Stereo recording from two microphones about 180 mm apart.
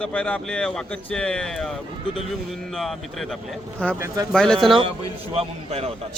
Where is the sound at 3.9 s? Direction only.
15° right (ahead or behind).